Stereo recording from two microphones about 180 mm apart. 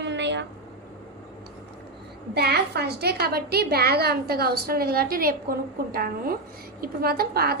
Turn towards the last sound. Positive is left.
turn(degrees=-60)  # may be behind; listen again after turning